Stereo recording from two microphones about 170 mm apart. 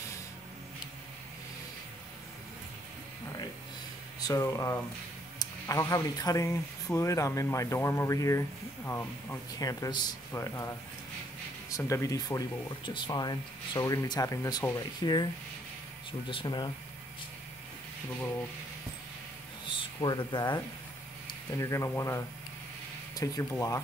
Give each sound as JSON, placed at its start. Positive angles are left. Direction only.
{"t": 4.2, "sound": "speech", "side_deg": 20}
{"t": 11.7, "sound": "speech", "side_deg": 20}
{"t": 16.1, "sound": "speech", "side_deg": 30}
{"t": 19.6, "sound": "speech", "side_deg": 30}